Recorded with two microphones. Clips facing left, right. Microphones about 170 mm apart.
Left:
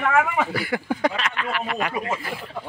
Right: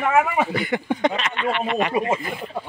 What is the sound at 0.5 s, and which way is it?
Speech, 5° left (ahead or behind).